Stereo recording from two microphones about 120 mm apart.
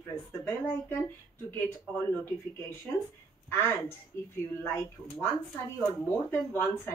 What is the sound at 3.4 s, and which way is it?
Speech, 15° left (ahead or behind).